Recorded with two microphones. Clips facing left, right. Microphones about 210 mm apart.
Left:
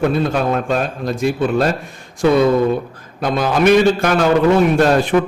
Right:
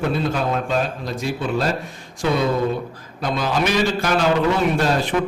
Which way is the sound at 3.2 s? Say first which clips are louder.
Left 5 dB; 55° left (ahead or behind).